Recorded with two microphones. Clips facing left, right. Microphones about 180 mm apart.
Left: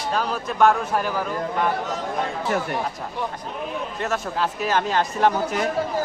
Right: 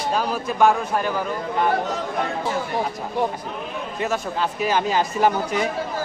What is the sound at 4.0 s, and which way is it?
Speech, centre (ahead or behind).